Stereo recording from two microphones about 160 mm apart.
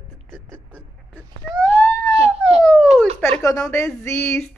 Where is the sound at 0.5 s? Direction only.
10° left (ahead or behind).